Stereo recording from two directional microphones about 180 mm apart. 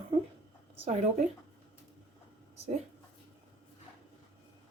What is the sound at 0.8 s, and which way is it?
Speech, 40° right (ahead or behind).